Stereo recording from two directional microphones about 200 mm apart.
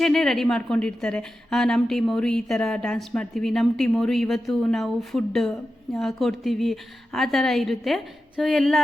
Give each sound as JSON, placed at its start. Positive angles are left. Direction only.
{"t": 0.0, "sound": "a woman's voice", "side_deg": 0}